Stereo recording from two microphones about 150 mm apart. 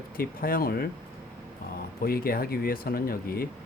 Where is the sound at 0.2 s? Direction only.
80° left.